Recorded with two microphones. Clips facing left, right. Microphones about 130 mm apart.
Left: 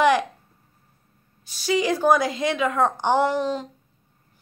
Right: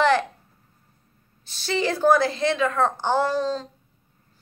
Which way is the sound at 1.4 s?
10° left (ahead or behind).